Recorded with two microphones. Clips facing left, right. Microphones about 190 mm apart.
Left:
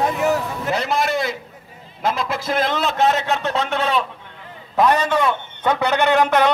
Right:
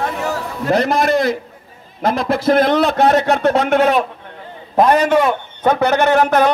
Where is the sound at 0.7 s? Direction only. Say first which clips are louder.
Right 7 dB; 55° right (ahead or behind).